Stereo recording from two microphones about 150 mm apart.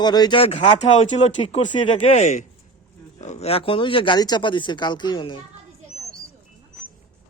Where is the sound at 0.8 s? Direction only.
50° left (ahead or behind); by 5.4 s 30° left (ahead or behind).